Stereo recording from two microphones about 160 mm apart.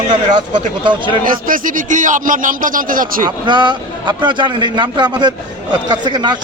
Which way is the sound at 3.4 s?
30° right (ahead or behind).